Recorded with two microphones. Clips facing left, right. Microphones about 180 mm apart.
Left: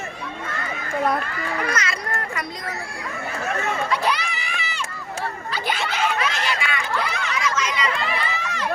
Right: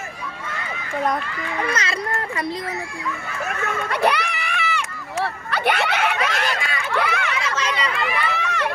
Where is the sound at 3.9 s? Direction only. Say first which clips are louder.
Right 3 dB; 60° right (ahead or behind).